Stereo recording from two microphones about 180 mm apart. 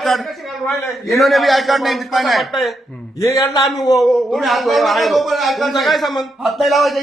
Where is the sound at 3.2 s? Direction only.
15° left (ahead or behind).